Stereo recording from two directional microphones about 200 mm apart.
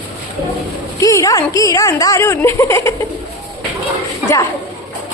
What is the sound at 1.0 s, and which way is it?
A woman's voice, 15° left (ahead or behind).